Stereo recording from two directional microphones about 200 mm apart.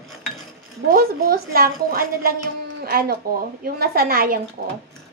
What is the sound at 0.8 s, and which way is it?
Speech, 50° right (ahead or behind).